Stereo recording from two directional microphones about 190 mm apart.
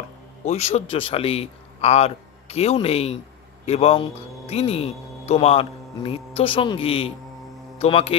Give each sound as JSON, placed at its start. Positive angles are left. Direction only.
{"t": 0.5, "sound": "speech", "side_deg": 35}